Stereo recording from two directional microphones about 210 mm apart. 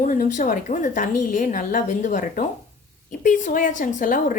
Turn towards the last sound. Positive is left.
turn(degrees=40)  # may be behind; listen again after turning